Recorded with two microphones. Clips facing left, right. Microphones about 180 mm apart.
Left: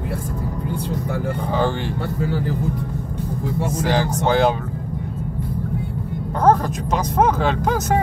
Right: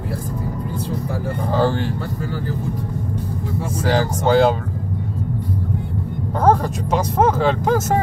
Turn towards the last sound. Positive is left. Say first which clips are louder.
# right 2 dB
turn(degrees=0)  # may be behind; listen again after turning